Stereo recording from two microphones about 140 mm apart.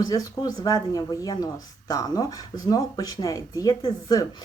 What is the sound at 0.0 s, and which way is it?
Speech, 25° left (ahead or behind).